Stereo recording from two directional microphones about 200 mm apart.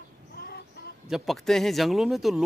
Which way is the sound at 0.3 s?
50° left (ahead or behind).